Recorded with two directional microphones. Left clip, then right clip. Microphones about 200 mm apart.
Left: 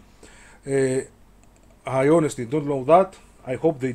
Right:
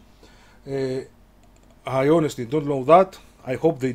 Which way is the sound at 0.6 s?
20° left (ahead or behind).